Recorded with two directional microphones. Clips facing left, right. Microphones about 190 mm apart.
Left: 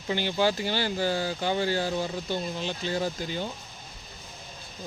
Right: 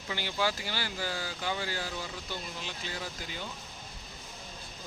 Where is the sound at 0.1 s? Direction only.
25° left (ahead or behind).